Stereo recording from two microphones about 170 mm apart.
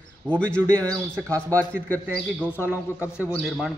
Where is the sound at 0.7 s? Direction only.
15° right (ahead or behind).